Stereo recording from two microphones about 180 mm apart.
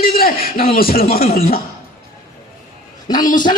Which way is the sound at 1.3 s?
35° left (ahead or behind).